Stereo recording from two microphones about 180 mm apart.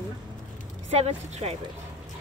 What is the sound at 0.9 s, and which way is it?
Speech, 35° right (ahead or behind).